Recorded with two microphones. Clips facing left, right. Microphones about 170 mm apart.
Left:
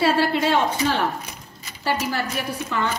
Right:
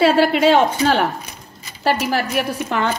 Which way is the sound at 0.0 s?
85° right.